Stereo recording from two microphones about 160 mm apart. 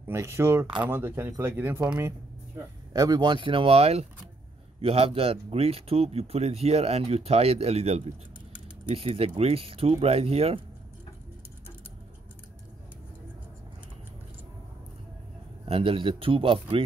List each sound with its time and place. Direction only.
0.0 s speech: 15° right (ahead or behind); by 10.6 s 40° right (ahead or behind)
15.6 s speech: 35° right (ahead or behind)